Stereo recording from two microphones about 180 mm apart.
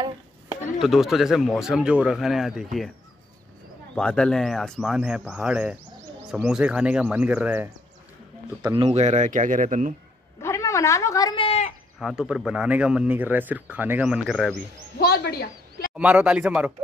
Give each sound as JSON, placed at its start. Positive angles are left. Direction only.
{"t": 0.7, "sound": "speech", "side_deg": 0}
{"t": 3.9, "sound": "speech", "side_deg": 5}
{"t": 8.6, "sound": "speech", "side_deg": -35}
{"t": 10.4, "sound": "a sound", "side_deg": 15}
{"t": 11.4, "sound": "sheep", "side_deg": 35}
{"t": 12.0, "sound": "speech", "side_deg": -5}
{"t": 15.0, "sound": "a woman's voice", "side_deg": 60}
{"t": 16.0, "sound": "speech", "side_deg": -5}